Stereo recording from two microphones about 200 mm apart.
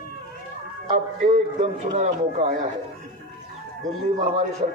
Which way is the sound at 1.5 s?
35° right (ahead or behind).